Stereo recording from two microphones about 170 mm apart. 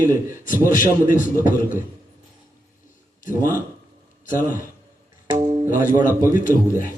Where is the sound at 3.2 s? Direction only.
50° left (ahead or behind).